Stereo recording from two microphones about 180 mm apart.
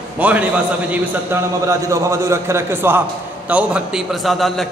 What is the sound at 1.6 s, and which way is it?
A man's voice, 15° right (ahead or behind).